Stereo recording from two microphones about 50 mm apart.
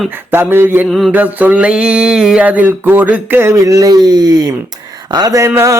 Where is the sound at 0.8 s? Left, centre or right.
Centre.